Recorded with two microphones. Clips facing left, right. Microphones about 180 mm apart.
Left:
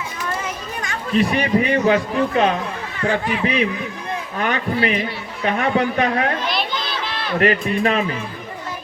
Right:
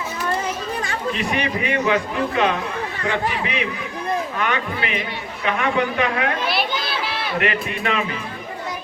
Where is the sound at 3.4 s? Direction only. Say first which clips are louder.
Left 5 dB; 40° left (ahead or behind).